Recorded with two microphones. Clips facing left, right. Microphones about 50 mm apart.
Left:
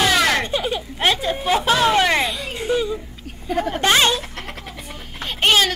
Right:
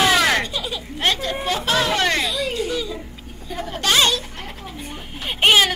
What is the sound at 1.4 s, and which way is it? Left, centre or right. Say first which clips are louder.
Hubbub: left 5 dB; centre.